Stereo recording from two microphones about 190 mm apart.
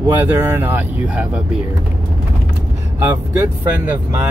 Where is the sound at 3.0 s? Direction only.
10° right (ahead or behind).